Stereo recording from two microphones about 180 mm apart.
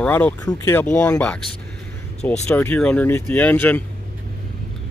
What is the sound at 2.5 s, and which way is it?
Speech, 10° left (ahead or behind).